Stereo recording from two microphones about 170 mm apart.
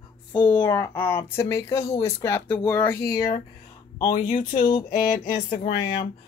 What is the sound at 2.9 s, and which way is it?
Speech, 65° left (ahead or behind).